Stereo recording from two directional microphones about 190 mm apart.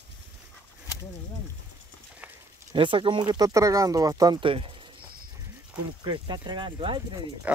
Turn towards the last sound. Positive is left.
turn(degrees=-5)  # may be behind; listen again after turning